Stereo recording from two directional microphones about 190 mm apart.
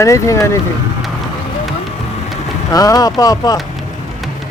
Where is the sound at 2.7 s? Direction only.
20° left (ahead or behind).